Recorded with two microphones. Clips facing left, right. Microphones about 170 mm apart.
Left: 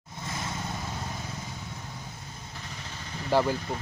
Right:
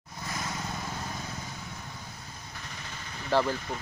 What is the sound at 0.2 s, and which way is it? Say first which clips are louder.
Vehicle: left 1 dB; 25° left (ahead or behind).